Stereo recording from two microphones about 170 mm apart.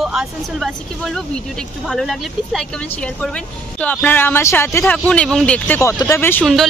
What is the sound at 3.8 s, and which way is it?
Speech, 10° left (ahead or behind).